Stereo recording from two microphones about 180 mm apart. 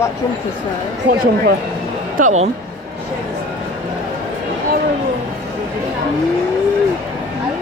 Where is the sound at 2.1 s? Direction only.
45° right (ahead or behind).